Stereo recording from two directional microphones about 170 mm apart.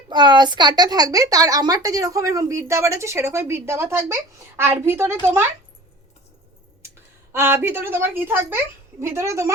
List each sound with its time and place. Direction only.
0.1 s a woman's voice: 25° right (ahead or behind)
7.3 s a woman's voice: 15° right (ahead or behind)